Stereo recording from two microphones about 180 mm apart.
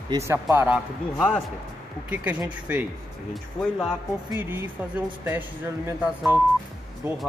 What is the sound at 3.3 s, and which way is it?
Speech, 5° left (ahead or behind).